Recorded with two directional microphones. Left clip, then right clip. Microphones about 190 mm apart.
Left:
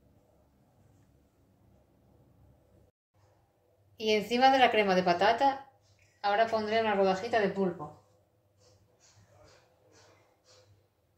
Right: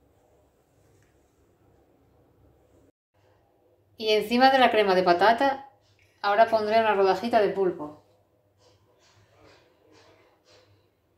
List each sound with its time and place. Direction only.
3.9 s a woman's voice: 15° right (ahead or behind)